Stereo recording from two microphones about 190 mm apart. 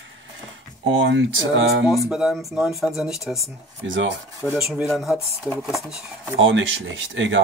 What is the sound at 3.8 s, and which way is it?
Speech, 90° right.